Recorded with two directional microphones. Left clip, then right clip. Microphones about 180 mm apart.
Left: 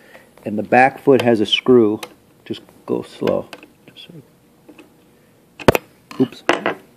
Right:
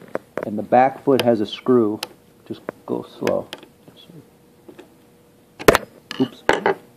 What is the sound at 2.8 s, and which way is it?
Speech, 40° left (ahead or behind).